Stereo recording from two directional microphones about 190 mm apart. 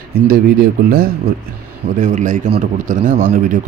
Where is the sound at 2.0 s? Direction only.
40° right (ahead or behind).